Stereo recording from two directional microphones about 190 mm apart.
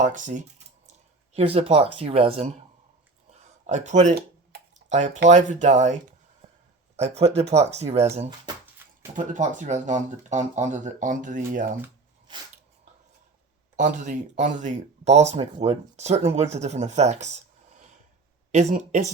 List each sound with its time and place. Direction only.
0.0 s speech: 40° right (ahead or behind)
3.7 s speech: 40° right (ahead or behind)
4.7 s drip: 40° right (ahead or behind)
5.3 s speech: 40° right (ahead or behind)
13.7 s speech: 40° right (ahead or behind)